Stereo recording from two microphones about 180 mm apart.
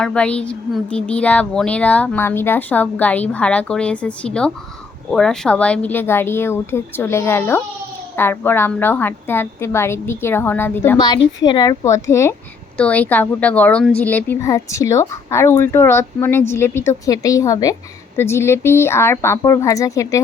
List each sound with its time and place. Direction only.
0.0 s speech: 5° left (ahead or behind)
10.9 s a woman's voice: 25° left (ahead or behind)
12.7 s speech: 5° left (ahead or behind)